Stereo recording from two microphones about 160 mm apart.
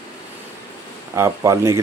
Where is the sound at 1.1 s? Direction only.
20° right (ahead or behind).